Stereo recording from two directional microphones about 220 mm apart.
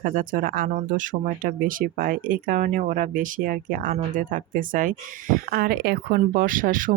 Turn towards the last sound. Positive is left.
turn(degrees=-40)  # may be behind; listen again after turning